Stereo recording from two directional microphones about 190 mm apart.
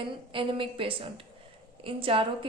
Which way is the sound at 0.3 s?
30° right (ahead or behind).